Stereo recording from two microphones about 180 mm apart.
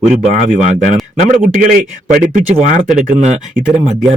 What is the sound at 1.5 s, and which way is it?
Speech, 45° right (ahead or behind).